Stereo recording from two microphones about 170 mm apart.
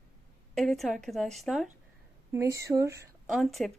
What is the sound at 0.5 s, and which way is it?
A woman's voice, centre (ahead or behind).